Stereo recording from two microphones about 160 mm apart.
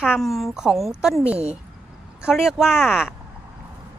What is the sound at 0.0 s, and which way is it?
A woman's voice, 5° right (ahead or behind).